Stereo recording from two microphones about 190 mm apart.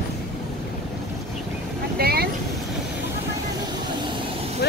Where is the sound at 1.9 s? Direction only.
55° right (ahead or behind).